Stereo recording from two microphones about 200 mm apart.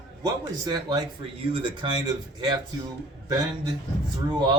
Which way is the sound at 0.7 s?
20° right (ahead or behind).